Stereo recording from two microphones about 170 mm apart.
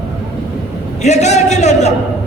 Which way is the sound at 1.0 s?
40° left (ahead or behind).